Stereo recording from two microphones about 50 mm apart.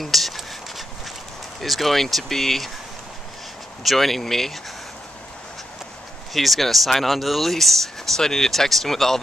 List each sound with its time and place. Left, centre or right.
0.0 s a sound: centre
1.6 s speech: centre
3.8 s speech: centre
6.3 s speech: centre